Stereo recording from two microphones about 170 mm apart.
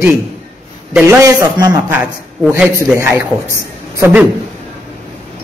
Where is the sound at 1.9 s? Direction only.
10° right (ahead or behind).